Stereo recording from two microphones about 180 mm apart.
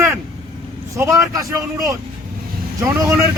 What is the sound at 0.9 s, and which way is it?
Speech, 15° right (ahead or behind).